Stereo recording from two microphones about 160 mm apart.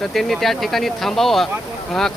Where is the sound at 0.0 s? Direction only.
Centre (ahead or behind).